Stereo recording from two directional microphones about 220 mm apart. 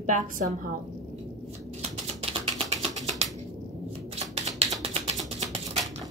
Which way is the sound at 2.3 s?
30° right (ahead or behind).